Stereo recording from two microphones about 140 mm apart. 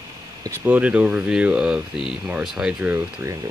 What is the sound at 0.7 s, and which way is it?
Speech, 10° right (ahead or behind).